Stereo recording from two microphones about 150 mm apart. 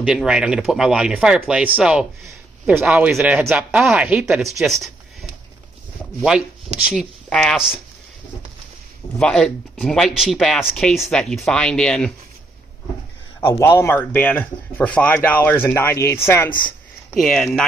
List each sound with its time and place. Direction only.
0.0 s speech: 5° right (ahead or behind)
2.2 s a sound: 15° right (ahead or behind)
2.8 s speech: 5° right (ahead or behind)
6.8 s speech: centre (ahead or behind)
9.2 s speech: 5° left (ahead or behind)
13.4 s a man's voice: 25° left (ahead or behind)
13.7 s speech: 15° left (ahead or behind)
17.1 s speech: 5° left (ahead or behind)